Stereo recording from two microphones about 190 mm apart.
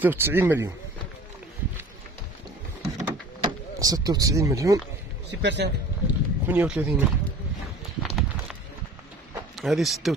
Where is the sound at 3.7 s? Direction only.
20° right (ahead or behind).